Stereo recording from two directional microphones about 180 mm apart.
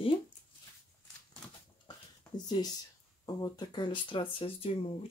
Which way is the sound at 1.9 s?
25° left (ahead or behind).